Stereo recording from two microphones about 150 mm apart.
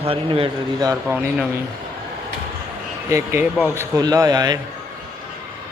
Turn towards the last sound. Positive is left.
turn(degrees=-25)  # may be behind; listen again after turning